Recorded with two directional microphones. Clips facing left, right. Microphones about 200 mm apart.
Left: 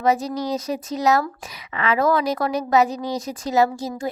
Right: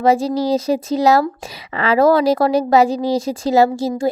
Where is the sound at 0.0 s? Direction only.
30° right (ahead or behind).